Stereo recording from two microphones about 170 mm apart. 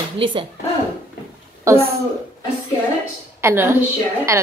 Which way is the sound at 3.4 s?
15° right (ahead or behind).